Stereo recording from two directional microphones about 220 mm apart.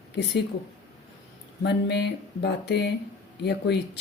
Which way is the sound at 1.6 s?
50° left (ahead or behind).